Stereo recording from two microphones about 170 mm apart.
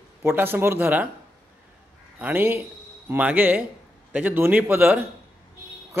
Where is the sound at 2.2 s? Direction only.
15° right (ahead or behind).